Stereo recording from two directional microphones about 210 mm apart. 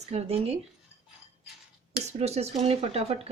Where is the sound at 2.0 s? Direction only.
30° right (ahead or behind).